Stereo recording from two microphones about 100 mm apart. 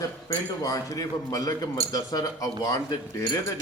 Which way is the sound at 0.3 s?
35° left (ahead or behind).